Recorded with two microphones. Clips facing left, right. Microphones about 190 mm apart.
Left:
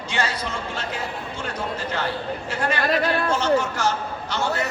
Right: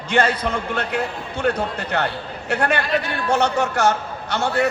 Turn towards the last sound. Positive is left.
turn(degrees=-65)  # may be behind; listen again after turning